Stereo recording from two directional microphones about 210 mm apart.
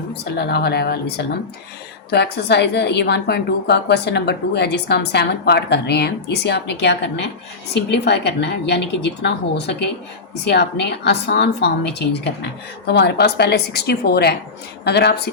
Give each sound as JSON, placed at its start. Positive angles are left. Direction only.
{"t": 0.1, "sound": "a woman's voice", "side_deg": 50}